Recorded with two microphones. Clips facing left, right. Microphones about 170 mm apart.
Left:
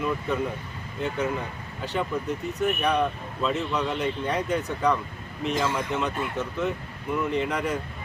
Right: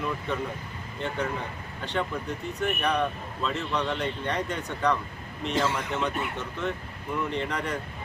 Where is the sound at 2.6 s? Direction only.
5° left (ahead or behind).